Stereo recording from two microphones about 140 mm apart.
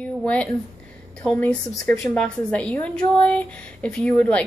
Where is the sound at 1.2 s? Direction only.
10° left (ahead or behind).